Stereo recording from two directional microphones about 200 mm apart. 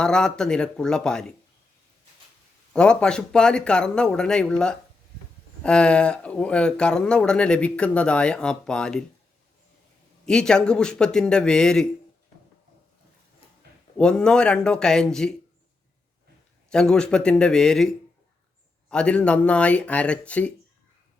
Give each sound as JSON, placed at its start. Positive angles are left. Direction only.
{"t": 0.0, "sound": "speech", "side_deg": 5}
{"t": 2.7, "sound": "speech", "side_deg": 5}
{"t": 10.2, "sound": "speech", "side_deg": 5}
{"t": 13.4, "sound": "a sound", "side_deg": 25}
{"t": 14.0, "sound": "speech", "side_deg": 5}
{"t": 16.7, "sound": "speech", "side_deg": 5}